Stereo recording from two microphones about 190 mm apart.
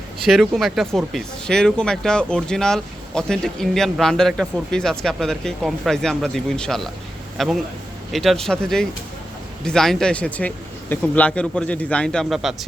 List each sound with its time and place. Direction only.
0.3 s speech: centre (ahead or behind)